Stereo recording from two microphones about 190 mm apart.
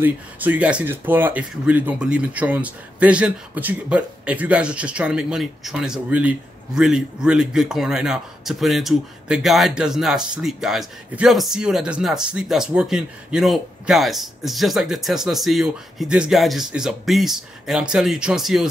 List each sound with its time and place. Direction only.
0.0 s speech: 10° right (ahead or behind)